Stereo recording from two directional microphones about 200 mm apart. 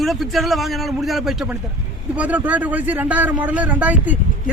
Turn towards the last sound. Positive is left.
turn(degrees=-10)  # may be behind; listen again after turning